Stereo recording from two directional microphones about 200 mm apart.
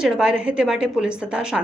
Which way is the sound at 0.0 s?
5° right (ahead or behind).